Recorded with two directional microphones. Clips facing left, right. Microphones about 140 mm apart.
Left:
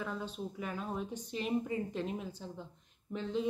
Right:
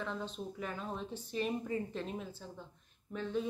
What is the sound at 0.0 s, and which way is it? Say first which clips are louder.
Speech: left 1 dB; 10° left (ahead or behind).